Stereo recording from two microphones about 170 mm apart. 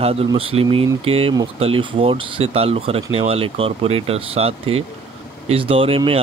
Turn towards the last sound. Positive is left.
turn(degrees=-35)  # may be behind; listen again after turning